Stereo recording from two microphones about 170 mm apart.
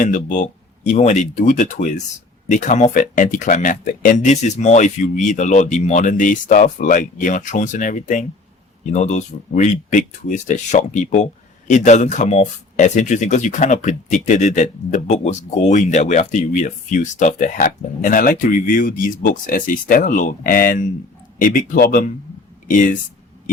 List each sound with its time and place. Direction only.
0.0 s speech: 50° left (ahead or behind)